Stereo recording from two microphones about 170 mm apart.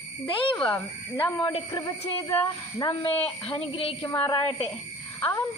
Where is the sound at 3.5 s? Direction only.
35° left (ahead or behind).